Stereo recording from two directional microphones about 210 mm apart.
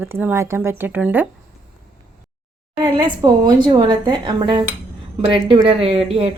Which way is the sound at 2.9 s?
20° right (ahead or behind).